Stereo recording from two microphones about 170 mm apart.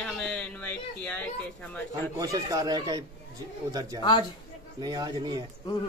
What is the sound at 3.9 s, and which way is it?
Speech, 25° left (ahead or behind).